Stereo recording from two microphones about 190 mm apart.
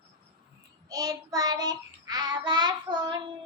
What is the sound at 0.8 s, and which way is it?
Child singing, 20° right (ahead or behind).